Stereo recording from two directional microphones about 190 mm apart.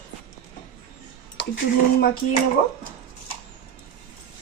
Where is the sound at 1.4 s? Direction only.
65° left (ahead or behind).